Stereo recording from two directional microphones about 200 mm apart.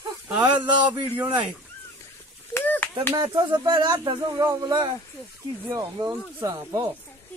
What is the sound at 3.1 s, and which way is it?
Speech, 20° right (ahead or behind).